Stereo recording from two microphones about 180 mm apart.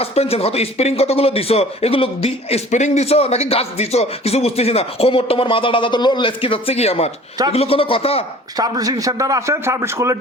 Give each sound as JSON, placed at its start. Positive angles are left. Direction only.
{"t": 0.0, "sound": "speech", "side_deg": 35}
{"t": 8.5, "sound": "a man's voice", "side_deg": -20}